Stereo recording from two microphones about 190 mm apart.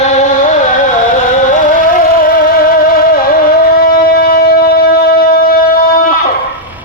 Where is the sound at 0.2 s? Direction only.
40° left (ahead or behind).